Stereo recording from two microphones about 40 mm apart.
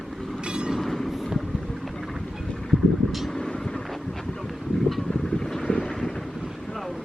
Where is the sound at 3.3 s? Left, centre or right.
Centre.